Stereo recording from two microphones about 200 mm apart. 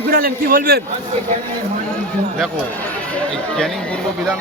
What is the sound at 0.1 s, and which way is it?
Speech, 45° right (ahead or behind).